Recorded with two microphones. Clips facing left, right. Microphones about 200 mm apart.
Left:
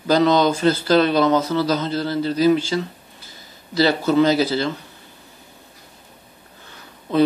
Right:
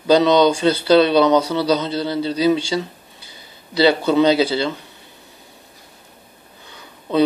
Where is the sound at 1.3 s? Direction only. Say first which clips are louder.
Right 2 dB; 15° right (ahead or behind).